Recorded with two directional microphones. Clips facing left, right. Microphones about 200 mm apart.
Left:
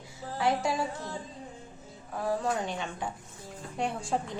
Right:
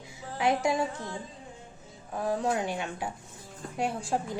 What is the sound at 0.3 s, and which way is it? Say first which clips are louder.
Speech: right 2 dB; 20° right (ahead or behind).